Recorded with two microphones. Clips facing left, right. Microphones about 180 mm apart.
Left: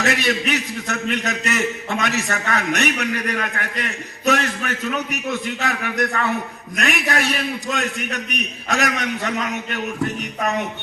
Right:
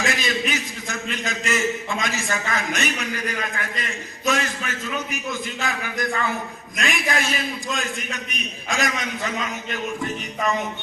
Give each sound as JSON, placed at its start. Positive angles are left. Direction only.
{"t": 0.0, "sound": "a man's voice", "side_deg": 70}